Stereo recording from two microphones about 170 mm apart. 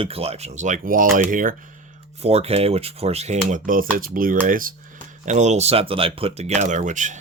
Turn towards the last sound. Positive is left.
turn(degrees=-45)  # may be behind; listen again after turning